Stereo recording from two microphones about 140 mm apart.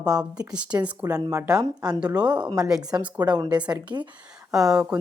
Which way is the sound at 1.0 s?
25° right (ahead or behind).